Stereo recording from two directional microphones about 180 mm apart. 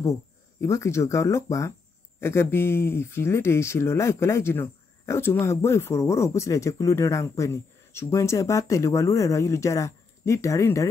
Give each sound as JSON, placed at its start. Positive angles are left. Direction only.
{"t": 0.6, "sound": "speech", "side_deg": 15}